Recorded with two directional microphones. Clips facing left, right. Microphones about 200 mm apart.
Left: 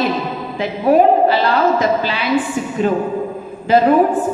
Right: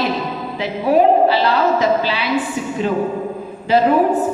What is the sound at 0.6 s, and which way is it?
A woman's voice, 50° left (ahead or behind).